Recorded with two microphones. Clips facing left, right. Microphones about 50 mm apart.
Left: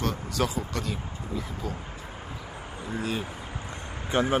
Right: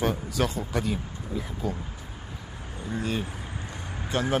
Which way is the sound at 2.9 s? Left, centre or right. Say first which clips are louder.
Right 1 dB; centre.